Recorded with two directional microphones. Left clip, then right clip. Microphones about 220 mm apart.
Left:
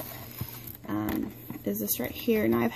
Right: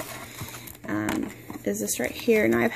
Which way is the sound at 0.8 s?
10° right (ahead or behind).